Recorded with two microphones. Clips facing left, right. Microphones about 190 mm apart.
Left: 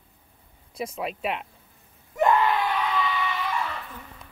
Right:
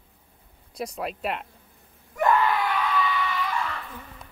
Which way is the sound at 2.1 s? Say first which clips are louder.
Left 1 dB; 20° left (ahead or behind).